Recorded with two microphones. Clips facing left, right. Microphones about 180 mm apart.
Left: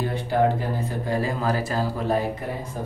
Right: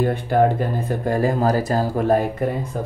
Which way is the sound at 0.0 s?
50° right (ahead or behind).